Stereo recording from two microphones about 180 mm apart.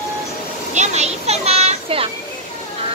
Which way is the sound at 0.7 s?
40° right (ahead or behind).